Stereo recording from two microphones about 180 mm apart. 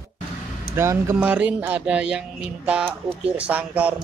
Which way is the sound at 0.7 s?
15° right (ahead or behind).